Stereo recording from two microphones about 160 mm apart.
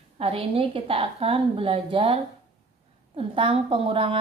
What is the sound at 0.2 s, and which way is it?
A woman's voice, 35° right (ahead or behind).